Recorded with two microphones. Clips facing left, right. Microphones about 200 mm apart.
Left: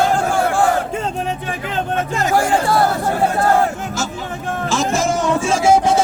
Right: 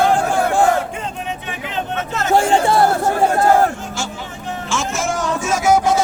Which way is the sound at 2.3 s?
25° right (ahead or behind).